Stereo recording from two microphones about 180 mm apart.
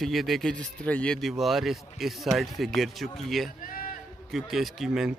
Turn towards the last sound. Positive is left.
turn(degrees=0)  # may be behind; listen again after turning